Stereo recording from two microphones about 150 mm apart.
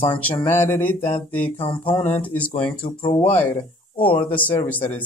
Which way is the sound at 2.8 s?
35° left (ahead or behind).